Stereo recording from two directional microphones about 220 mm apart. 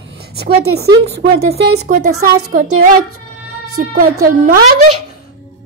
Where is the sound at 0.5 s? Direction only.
80° right.